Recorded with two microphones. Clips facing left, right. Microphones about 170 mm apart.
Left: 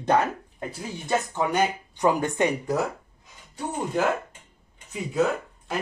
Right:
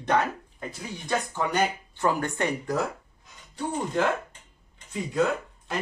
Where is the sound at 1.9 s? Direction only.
15° left (ahead or behind).